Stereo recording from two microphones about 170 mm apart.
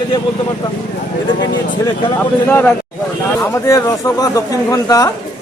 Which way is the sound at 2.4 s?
10° left (ahead or behind).